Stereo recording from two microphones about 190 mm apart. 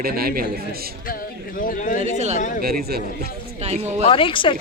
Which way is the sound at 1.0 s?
50° left (ahead or behind).